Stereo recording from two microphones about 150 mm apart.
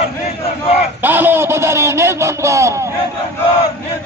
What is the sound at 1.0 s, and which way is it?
A man's voice, 15° right (ahead or behind).